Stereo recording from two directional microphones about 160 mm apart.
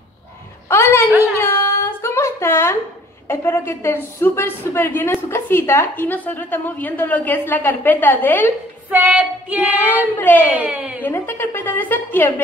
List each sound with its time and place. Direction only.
0.7 s a sound: 15° left (ahead or behind)
3.3 s a woman's voice: 15° left (ahead or behind)
8.9 s child singing: 10° right (ahead or behind)
10.1 s a woman's voice: 10° left (ahead or behind)
10.5 s child singing: 10° right (ahead or behind)
11.0 s a woman's voice: 15° left (ahead or behind)